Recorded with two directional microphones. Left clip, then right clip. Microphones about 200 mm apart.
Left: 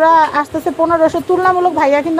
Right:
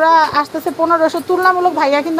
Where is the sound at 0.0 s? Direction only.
25° left (ahead or behind).